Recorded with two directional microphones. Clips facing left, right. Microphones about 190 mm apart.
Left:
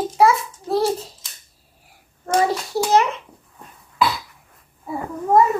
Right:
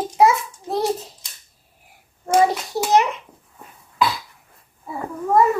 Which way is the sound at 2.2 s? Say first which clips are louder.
Right 2 dB; 15° right (ahead or behind).